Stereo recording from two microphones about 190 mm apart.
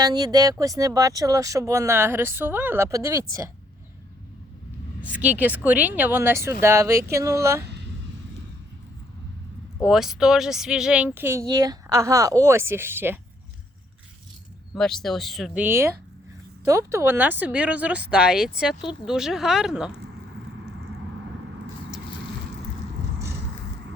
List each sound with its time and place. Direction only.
0.0 s speech: 20° right (ahead or behind)
5.0 s speech: 10° right (ahead or behind)
9.8 s speech: centre (ahead or behind)
14.8 s speech: centre (ahead or behind)